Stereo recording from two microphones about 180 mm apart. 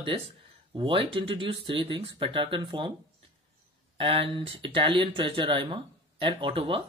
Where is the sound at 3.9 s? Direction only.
30° right (ahead or behind).